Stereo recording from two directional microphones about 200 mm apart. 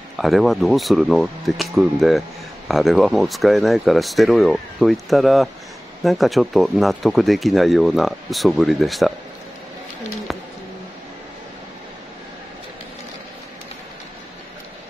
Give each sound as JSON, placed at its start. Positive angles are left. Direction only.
{"t": 0.2, "sound": "speech", "side_deg": 0}